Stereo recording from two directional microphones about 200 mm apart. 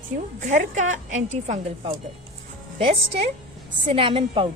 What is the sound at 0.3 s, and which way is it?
A woman's voice, 35° right (ahead or behind).